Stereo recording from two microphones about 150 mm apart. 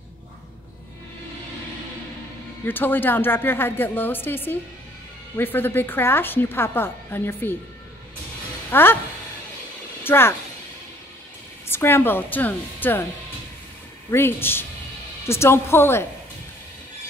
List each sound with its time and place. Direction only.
2.6 s a woman's voice: 15° left (ahead or behind)
8.6 s speech: 15° left (ahead or behind)
10.0 s speech: 15° left (ahead or behind)
11.6 s a woman's voice: 15° left (ahead or behind)
14.1 s a woman's voice: 15° left (ahead or behind)